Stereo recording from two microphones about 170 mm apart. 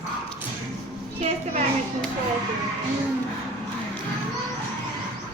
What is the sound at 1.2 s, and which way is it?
Speech, 40° right (ahead or behind).